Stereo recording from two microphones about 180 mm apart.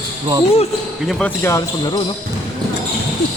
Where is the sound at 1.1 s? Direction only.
5° left (ahead or behind).